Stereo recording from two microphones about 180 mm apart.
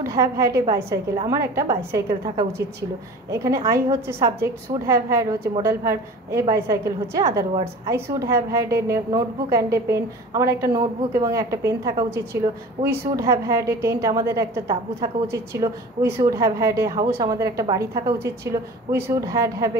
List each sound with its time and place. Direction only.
0.0 s a woman's voice: 15° right (ahead or behind)